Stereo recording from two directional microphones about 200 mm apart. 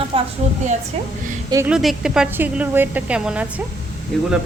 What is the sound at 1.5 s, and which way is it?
A woman's voice, 5° right (ahead or behind).